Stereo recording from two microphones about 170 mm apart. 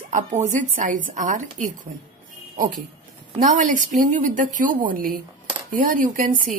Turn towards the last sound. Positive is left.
turn(degrees=-50)  # may be behind; listen again after turning